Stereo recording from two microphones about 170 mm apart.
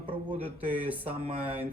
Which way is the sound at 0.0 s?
30° right (ahead or behind).